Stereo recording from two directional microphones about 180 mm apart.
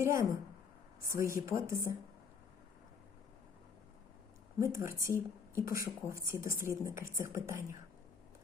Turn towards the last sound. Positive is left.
turn(degrees=-15)  # may be behind; listen again after turning